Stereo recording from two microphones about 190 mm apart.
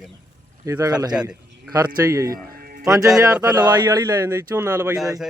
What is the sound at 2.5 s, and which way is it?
Music, 50° right (ahead or behind).